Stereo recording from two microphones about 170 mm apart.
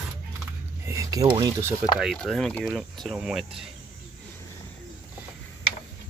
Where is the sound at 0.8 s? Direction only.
20° right (ahead or behind).